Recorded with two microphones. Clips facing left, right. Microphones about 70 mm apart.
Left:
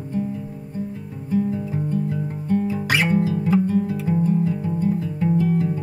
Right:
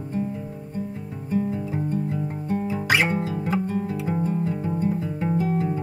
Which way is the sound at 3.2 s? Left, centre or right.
Right.